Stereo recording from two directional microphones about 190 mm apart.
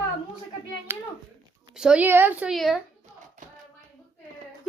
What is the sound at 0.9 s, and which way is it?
A child's voice, 10° right (ahead or behind).